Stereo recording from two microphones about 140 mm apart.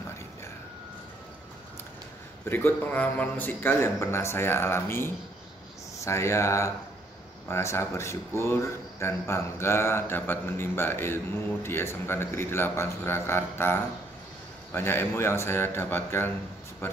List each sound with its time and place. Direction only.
2.5 s speech: 15° left (ahead or behind)